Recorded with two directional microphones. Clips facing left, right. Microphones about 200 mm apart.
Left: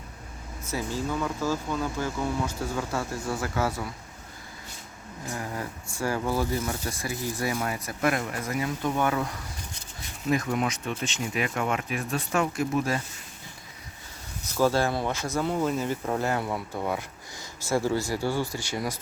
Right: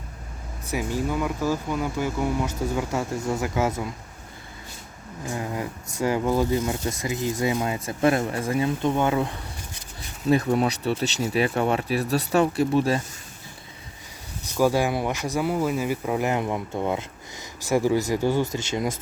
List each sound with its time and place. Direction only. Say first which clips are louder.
0.7 s speech: right 4 dB; 15° right (ahead or behind)
5.3 s a sound: right 4 dB; 20° right (ahead or behind)
6.0 s speech: right 5 dB; 20° right (ahead or behind)
14.5 s speech: right 2 dB; 15° right (ahead or behind)